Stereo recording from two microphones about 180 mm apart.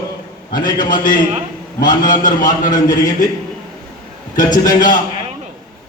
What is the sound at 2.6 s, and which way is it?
Speech, 20° left (ahead or behind).